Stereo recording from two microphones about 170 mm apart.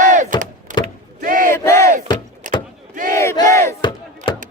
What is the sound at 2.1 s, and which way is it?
Vehicle, 30° left (ahead or behind).